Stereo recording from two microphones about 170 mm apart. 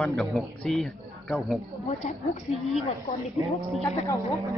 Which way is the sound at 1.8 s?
40° left (ahead or behind).